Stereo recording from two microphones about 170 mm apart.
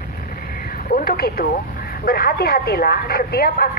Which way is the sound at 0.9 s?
60° left (ahead or behind).